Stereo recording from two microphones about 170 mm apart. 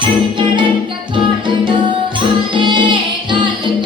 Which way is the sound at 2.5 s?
30° right (ahead or behind).